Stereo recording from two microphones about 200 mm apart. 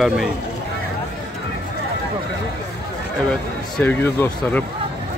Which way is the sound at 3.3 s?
5° left (ahead or behind).